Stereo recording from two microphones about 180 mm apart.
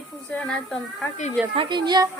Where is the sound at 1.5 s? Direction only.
25° right (ahead or behind).